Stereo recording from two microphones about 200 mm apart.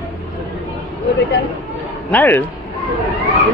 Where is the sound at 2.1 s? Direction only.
10° left (ahead or behind).